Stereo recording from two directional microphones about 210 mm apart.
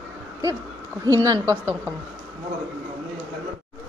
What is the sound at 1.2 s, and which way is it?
Speech, 15° right (ahead or behind).